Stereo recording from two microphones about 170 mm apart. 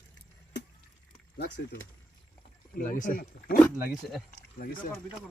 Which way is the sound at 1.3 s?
75° left (ahead or behind).